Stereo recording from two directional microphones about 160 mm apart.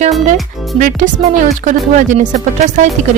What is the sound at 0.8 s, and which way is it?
Speech, 55° right (ahead or behind).